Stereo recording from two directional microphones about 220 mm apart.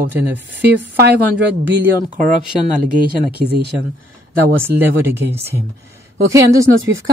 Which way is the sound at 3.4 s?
45° right (ahead or behind).